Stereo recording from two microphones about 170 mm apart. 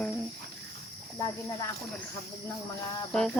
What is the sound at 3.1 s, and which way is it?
Speech, centre (ahead or behind).